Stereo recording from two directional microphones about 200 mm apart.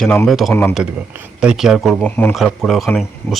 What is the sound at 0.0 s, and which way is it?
Speech, 5° left (ahead or behind).